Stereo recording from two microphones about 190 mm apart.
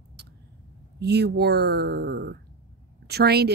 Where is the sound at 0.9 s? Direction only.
60° right (ahead or behind).